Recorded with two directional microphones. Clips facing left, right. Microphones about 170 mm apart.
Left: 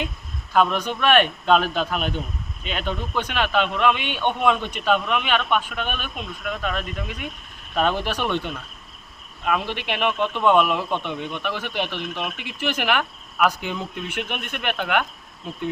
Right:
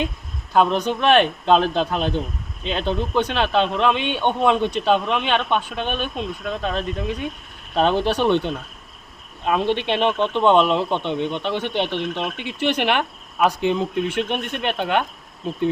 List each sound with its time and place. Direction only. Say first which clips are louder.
0.5 s speech: right 3 dB; 25° right (ahead or behind)